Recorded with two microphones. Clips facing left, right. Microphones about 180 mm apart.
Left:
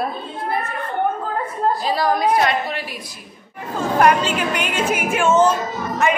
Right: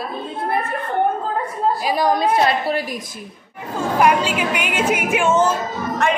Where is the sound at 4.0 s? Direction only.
10° right (ahead or behind).